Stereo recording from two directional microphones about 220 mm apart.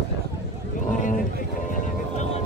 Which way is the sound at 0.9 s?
35° left (ahead or behind).